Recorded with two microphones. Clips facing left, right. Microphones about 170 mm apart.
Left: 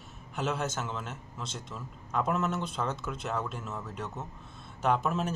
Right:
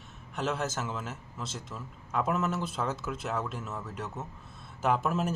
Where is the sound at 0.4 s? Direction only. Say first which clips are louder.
Even; centre (ahead or behind).